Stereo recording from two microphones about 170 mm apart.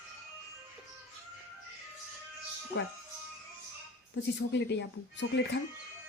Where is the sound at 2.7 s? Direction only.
90° left.